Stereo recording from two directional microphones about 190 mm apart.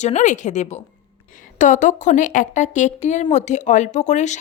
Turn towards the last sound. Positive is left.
turn(degrees=40)  # may be behind; listen again after turning